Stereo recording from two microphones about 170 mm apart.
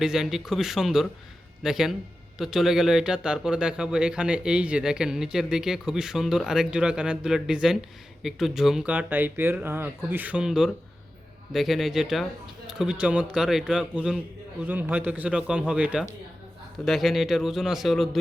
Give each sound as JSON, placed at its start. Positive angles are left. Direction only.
{"t": 0.0, "sound": "speech", "side_deg": -5}